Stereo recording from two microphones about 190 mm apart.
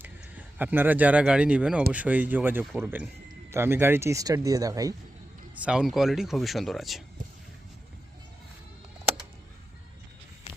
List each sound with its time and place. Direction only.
0.0 s speech: 10° right (ahead or behind)
5.5 s speech: 5° right (ahead or behind)